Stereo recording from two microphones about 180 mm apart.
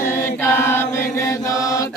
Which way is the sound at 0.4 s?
15° left (ahead or behind).